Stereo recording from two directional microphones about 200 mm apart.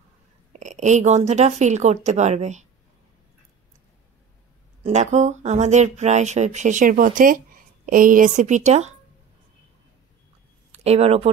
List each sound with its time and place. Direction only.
0.5 s speech: 35° right (ahead or behind)
4.8 s speech: 35° right (ahead or behind)
10.8 s speech: 30° right (ahead or behind)